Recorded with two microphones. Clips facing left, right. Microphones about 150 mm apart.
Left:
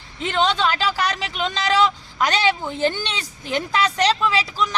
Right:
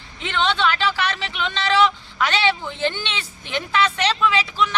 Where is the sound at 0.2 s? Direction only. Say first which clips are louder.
Left 1 dB; 40° left (ahead or behind).